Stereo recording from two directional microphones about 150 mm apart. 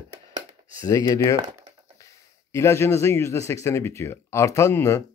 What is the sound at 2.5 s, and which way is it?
A man's voice, 15° left (ahead or behind).